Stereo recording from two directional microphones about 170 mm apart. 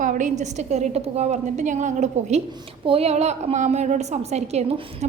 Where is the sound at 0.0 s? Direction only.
50° right (ahead or behind).